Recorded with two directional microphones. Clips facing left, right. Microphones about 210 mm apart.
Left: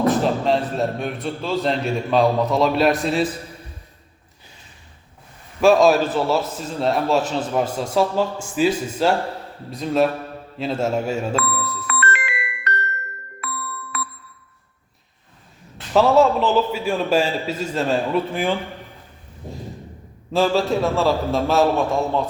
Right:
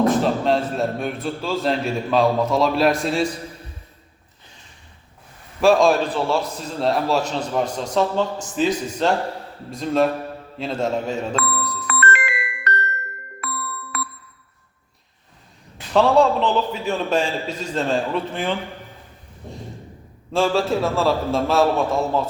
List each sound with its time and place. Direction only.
0.0 s a man's voice: centre (ahead or behind)
5.5 s a man's voice: centre (ahead or behind)
11.6 s music: 40° right (ahead or behind)
15.9 s a man's voice: 5° left (ahead or behind)
20.3 s a man's voice: centre (ahead or behind)